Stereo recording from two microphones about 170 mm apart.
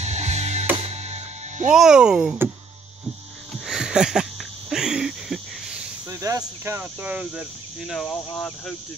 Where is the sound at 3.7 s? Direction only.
5° right (ahead or behind).